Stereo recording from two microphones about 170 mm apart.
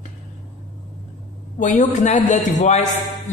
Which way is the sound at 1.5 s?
50° left (ahead or behind).